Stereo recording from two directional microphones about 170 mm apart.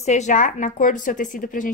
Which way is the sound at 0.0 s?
40° left (ahead or behind).